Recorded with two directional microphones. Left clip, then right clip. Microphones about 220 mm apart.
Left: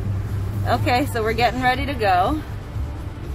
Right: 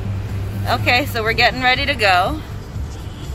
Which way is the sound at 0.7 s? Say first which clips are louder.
Right 3 dB; 25° left (ahead or behind).